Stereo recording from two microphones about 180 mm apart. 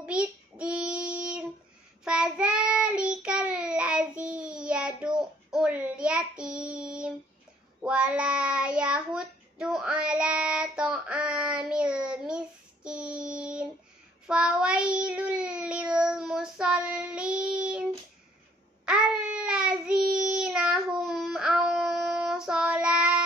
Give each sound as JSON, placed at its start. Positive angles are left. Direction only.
{"t": 0.0, "sound": "child singing", "side_deg": -5}
{"t": 18.9, "sound": "child singing", "side_deg": -5}